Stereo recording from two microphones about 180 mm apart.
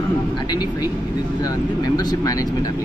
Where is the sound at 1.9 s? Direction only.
20° left (ahead or behind).